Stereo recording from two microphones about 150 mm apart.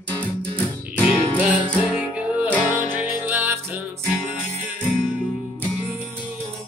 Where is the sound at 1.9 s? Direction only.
5° right (ahead or behind).